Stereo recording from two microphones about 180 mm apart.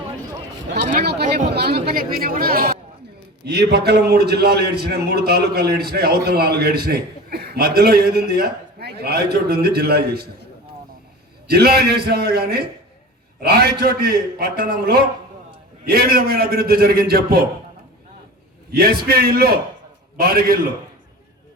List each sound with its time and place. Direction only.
1.5 s a man's voice: 65° right (ahead or behind)
11.4 s a man's voice: 60° right (ahead or behind)
18.7 s a man's voice: 60° right (ahead or behind)